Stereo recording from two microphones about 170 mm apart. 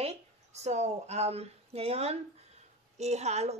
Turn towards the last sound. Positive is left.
turn(degrees=-40)  # may be behind; listen again after turning